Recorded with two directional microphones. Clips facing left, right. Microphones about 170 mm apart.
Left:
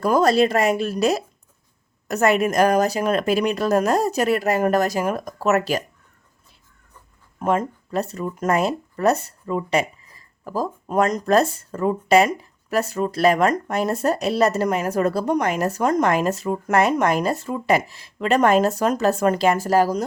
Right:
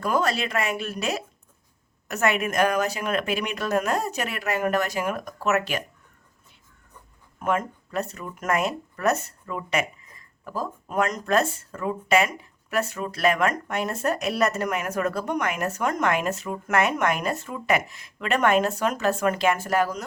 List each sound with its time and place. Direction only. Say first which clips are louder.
0.0 s speech: left 8 dB; 40° left (ahead or behind)
7.3 s speech: left 4 dB; 35° left (ahead or behind)